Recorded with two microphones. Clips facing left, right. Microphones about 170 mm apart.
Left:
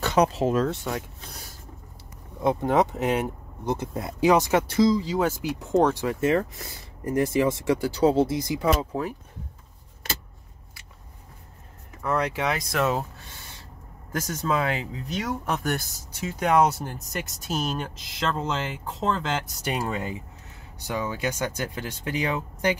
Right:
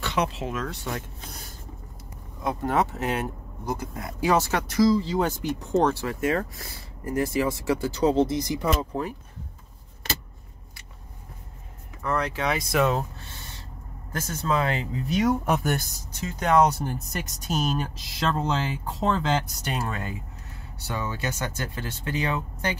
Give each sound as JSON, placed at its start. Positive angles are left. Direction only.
{"t": 0.0, "sound": "speech", "side_deg": 40}
{"t": 0.8, "sound": "speech", "side_deg": 5}
{"t": 2.4, "sound": "speech", "side_deg": 20}
{"t": 4.3, "sound": "speech", "side_deg": 15}
{"t": 5.9, "sound": "speech", "side_deg": 20}
{"t": 8.0, "sound": "speech", "side_deg": 5}
{"t": 12.0, "sound": "speech", "side_deg": 5}
{"t": 14.4, "sound": "speech", "side_deg": 10}
{"t": 15.2, "sound": "speech", "side_deg": -15}
{"t": 15.6, "sound": "speech", "side_deg": 0}
{"t": 19.7, "sound": "speech", "side_deg": 15}